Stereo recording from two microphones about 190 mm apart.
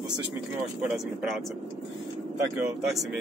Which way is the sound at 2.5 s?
Centre (ahead or behind).